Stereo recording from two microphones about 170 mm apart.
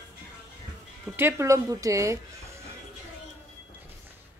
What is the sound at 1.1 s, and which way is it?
A woman's voice, 15° right (ahead or behind).